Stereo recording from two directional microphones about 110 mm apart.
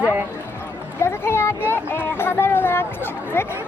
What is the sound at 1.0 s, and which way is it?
Speech, 20° left (ahead or behind).